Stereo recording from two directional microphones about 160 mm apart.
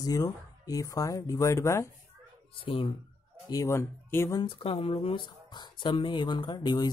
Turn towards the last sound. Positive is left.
turn(degrees=25)  # may be behind; listen again after turning